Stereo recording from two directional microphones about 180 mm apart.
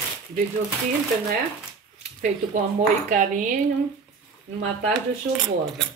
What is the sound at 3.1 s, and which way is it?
Speech, 45° right (ahead or behind).